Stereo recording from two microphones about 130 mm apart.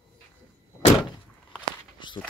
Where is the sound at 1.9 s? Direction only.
35° left (ahead or behind).